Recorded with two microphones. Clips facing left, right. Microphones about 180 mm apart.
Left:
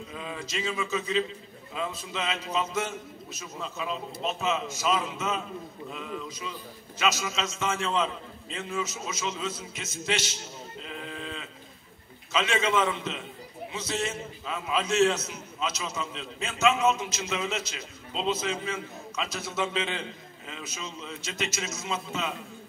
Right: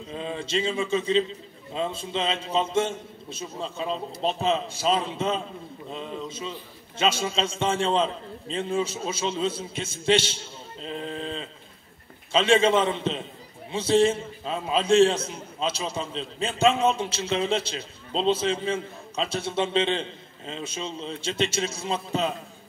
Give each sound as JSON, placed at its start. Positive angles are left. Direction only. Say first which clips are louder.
{"t": 0.1, "sound": "a man's voice", "louder": "right 8 dB", "side_deg": -30}